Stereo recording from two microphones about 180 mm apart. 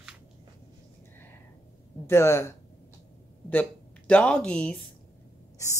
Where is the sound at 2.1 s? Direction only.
15° left (ahead or behind).